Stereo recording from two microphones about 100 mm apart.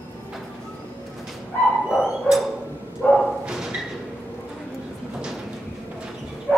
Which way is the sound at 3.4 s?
5° right (ahead or behind).